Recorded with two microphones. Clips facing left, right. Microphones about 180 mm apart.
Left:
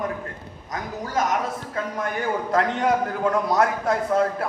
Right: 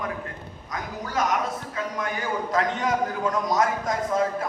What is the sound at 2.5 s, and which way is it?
A man's voice, 60° left (ahead or behind).